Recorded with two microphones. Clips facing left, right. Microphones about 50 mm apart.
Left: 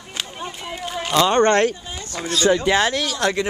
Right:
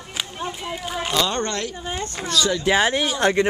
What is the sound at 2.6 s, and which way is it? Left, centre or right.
Speech, centre.